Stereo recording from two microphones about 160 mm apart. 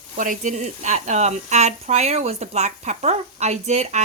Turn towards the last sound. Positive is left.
turn(degrees=-45)  # may be behind; listen again after turning